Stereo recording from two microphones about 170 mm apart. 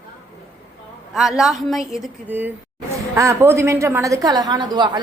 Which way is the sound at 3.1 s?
15° right (ahead or behind).